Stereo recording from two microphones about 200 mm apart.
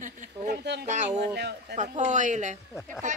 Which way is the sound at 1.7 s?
35° right (ahead or behind).